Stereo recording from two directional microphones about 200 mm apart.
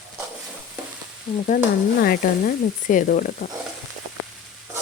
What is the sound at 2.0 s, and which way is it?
Speech, 50° left (ahead or behind).